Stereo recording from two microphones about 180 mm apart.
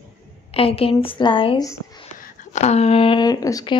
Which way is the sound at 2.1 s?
40° left (ahead or behind).